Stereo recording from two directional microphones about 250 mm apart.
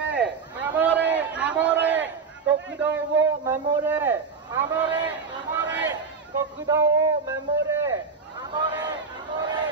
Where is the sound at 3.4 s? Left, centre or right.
Centre.